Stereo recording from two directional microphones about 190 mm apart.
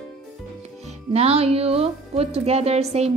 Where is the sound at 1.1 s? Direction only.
35° right (ahead or behind).